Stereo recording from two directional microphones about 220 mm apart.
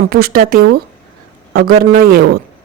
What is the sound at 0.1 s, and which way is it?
A man's voice, 45° right (ahead or behind).